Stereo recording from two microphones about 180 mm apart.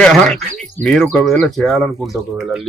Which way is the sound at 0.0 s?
Centre (ahead or behind).